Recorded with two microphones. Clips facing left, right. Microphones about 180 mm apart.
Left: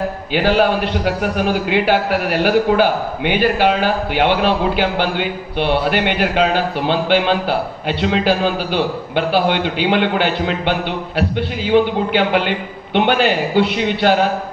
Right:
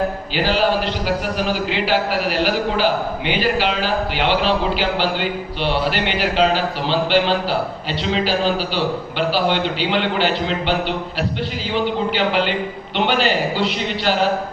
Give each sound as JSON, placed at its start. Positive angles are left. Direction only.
{"t": 0.3, "sound": "a man's voice", "side_deg": 55}
{"t": 11.7, "sound": "a man's voice", "side_deg": 55}